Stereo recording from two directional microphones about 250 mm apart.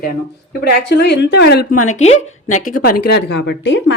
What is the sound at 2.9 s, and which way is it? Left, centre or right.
Speech, left.